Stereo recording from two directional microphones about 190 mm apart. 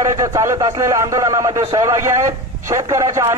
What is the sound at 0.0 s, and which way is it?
A man's voice, 15° right (ahead or behind).